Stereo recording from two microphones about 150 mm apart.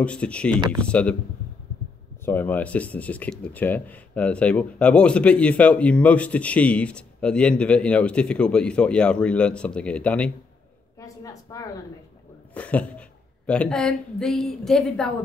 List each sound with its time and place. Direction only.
0.0 s speech: 10° left (ahead or behind)
2.2 s speech: 10° left (ahead or behind)
11.0 s a sound: 20° left (ahead or behind)
12.5 s a woman's voice: 10° left (ahead or behind)